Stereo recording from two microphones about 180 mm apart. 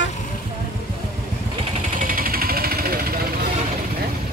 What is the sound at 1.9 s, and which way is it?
Vehicle, 50° right (ahead or behind).